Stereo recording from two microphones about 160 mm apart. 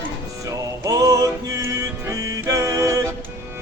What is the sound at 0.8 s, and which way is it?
Music, 25° right (ahead or behind).